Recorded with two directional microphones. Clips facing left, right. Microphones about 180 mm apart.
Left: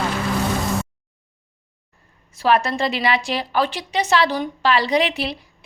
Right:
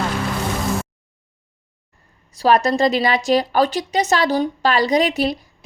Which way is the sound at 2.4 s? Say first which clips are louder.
Right 3 dB; 40° right (ahead or behind).